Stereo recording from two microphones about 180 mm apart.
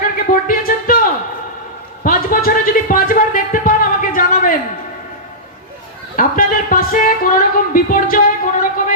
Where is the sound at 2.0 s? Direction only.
50° left (ahead or behind).